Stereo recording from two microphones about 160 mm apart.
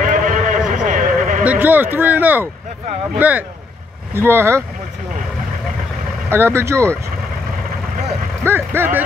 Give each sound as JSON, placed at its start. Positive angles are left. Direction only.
{"t": 0.0, "sound": "a sound", "side_deg": -55}
{"t": 1.4, "sound": "speech", "side_deg": -10}
{"t": 6.2, "sound": "speech", "side_deg": -15}
{"t": 8.5, "sound": "speech", "side_deg": -15}